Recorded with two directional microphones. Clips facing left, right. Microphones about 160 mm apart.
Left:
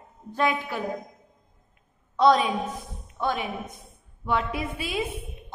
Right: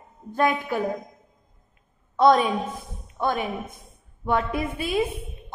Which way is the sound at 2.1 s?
50° right (ahead or behind).